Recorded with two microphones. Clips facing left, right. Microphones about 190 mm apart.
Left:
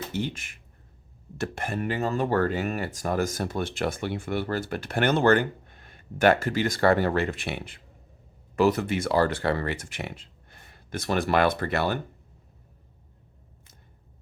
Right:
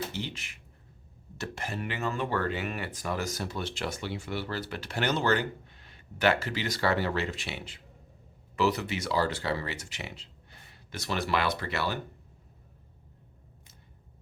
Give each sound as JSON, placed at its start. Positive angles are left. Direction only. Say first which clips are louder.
{"t": 0.1, "sound": "speech", "louder": "left 7 dB", "side_deg": 50}